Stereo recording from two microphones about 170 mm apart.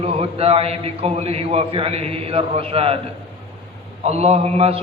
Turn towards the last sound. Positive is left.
turn(degrees=-35)  # may be behind; listen again after turning